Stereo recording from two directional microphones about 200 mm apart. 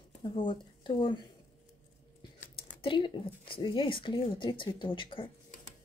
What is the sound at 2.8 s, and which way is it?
Speech, 25° left (ahead or behind).